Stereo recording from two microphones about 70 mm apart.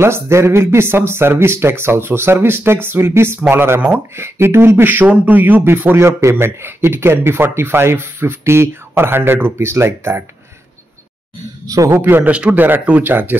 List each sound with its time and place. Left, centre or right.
0.0 s speech: right
11.6 s speech: right
12.0 s speech: right